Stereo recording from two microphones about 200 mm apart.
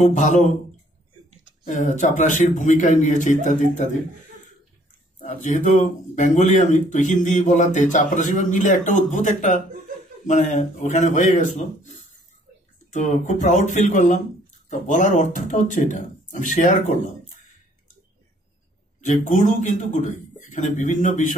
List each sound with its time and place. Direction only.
0.0 s speech: 35° left (ahead or behind)
1.7 s speech: 40° left (ahead or behind)
5.4 s speech: 40° left (ahead or behind)
12.9 s speech: 40° left (ahead or behind)
18.9 s speech: 40° left (ahead or behind)